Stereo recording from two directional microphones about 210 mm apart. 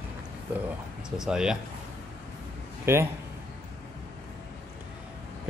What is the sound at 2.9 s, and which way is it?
Speech, 10° right (ahead or behind).